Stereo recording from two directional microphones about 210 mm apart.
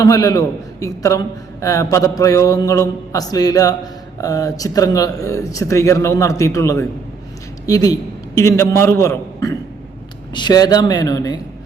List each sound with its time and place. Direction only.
0.0 s a man's voice: 15° left (ahead or behind)